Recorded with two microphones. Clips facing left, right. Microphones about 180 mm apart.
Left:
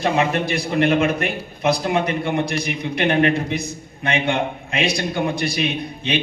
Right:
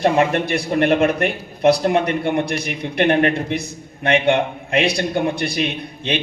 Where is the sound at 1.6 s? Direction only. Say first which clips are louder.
Right 4 dB; 60° right (ahead or behind).